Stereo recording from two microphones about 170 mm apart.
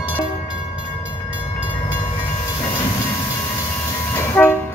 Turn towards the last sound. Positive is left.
turn(degrees=5)  # may be behind; listen again after turning